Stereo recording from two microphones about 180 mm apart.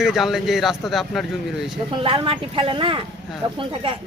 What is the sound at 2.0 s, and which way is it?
Speech, 30° right (ahead or behind).